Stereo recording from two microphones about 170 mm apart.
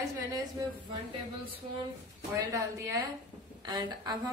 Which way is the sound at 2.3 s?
20° right (ahead or behind).